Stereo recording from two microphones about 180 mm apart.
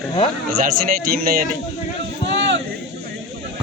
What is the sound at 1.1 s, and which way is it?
Speech, 55° right (ahead or behind).